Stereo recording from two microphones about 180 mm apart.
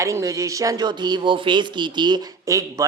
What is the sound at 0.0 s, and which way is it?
A man's voice, 15° right (ahead or behind).